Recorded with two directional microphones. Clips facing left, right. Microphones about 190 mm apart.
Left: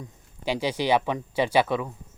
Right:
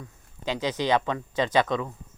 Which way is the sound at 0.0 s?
10° left (ahead or behind).